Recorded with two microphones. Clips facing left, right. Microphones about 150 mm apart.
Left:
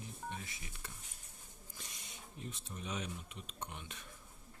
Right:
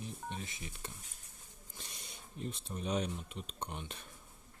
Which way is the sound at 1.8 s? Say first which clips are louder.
Right 2 dB; 35° right (ahead or behind).